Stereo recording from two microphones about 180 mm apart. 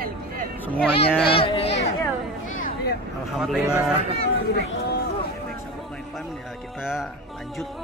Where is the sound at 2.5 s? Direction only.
50° left (ahead or behind).